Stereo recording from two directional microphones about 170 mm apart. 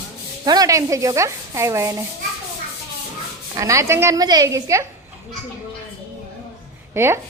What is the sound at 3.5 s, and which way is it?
A woman's voice, 20° right (ahead or behind).